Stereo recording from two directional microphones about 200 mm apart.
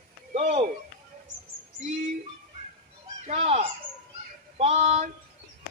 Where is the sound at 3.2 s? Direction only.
35° right (ahead or behind).